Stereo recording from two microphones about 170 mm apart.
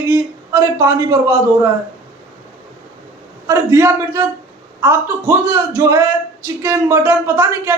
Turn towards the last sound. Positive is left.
turn(degrees=-15)  # may be behind; listen again after turning